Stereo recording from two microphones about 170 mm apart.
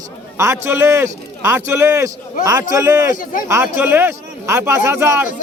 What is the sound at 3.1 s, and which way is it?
Speech, 50° left (ahead or behind).